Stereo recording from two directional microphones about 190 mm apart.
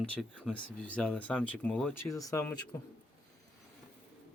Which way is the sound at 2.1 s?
15° left (ahead or behind).